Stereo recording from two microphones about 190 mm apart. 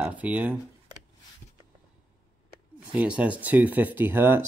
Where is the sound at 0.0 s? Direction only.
10° right (ahead or behind).